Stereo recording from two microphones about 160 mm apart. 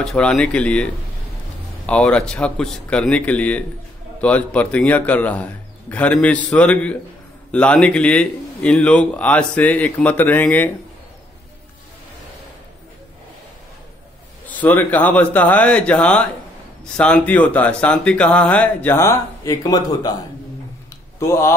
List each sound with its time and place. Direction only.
0.0 s speech: 5° left (ahead or behind)
1.9 s speech: 5° left (ahead or behind)
14.4 s speech: 10° left (ahead or behind)
21.2 s speech: 15° left (ahead or behind)